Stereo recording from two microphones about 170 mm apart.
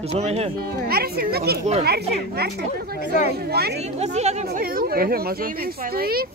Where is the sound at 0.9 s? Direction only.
65° right (ahead or behind).